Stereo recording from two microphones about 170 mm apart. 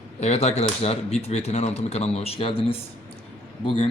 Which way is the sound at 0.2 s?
40° left (ahead or behind).